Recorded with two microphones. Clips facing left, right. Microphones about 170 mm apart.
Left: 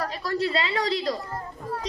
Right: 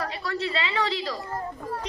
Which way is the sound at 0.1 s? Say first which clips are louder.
Left 3 dB; 40° left (ahead or behind).